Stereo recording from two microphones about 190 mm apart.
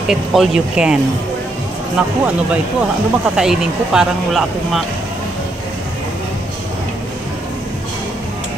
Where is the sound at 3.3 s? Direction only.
5° right (ahead or behind).